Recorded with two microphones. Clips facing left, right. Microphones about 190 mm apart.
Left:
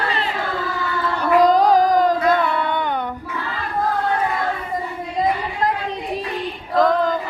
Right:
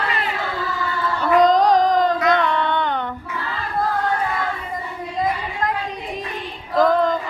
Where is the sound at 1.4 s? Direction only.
10° left (ahead or behind).